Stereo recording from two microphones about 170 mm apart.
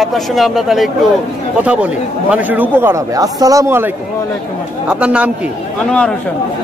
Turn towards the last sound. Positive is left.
turn(degrees=5)  # may be behind; listen again after turning